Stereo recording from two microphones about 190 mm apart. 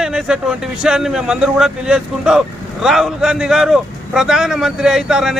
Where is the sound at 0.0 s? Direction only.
5° right (ahead or behind).